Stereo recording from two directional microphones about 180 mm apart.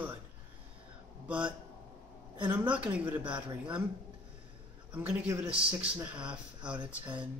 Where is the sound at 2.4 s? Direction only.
10° right (ahead or behind).